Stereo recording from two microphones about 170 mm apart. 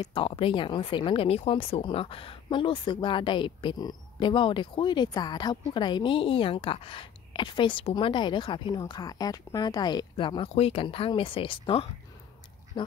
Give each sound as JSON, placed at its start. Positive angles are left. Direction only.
{"t": 0.0, "sound": "a woman's voice", "side_deg": 30}
{"t": 12.7, "sound": "duck", "side_deg": 25}